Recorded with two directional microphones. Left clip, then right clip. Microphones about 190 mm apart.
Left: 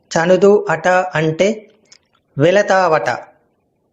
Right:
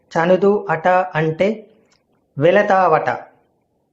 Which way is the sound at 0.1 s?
10° left (ahead or behind).